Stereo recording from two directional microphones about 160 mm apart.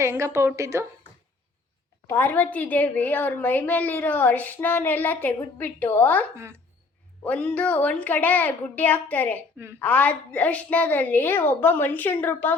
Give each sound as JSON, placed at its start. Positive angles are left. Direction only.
{"t": 0.0, "sound": "a woman's voice", "side_deg": -15}
{"t": 2.0, "sound": "a woman's voice", "side_deg": 15}
{"t": 6.3, "sound": "a woman's voice", "side_deg": -15}
{"t": 7.3, "sound": "a woman's voice", "side_deg": 10}